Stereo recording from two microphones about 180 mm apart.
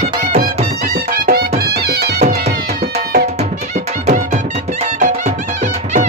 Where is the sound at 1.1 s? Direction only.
55° right (ahead or behind).